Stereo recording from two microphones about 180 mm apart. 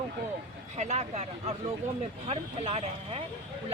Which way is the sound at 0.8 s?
40° right (ahead or behind).